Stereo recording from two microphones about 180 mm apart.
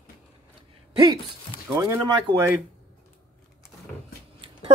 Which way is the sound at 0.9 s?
25° right (ahead or behind).